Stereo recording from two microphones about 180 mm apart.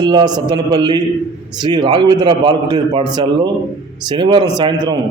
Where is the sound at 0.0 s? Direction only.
25° right (ahead or behind).